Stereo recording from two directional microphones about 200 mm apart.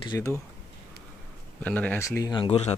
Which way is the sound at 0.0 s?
20° left (ahead or behind).